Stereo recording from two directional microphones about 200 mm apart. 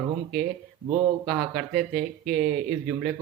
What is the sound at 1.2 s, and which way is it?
Speech, centre (ahead or behind).